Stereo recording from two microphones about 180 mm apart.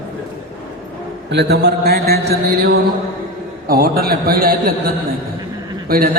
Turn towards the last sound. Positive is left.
turn(degrees=-55)  # may be behind; listen again after turning